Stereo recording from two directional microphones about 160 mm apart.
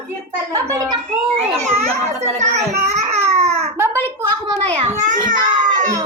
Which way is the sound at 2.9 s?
40° right (ahead or behind).